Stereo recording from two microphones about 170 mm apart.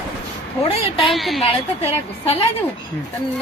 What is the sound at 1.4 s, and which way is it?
A woman's voice, 35° left (ahead or behind).